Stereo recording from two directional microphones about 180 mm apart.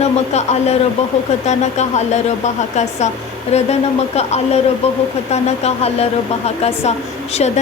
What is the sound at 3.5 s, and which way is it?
Speech, 35° left (ahead or behind).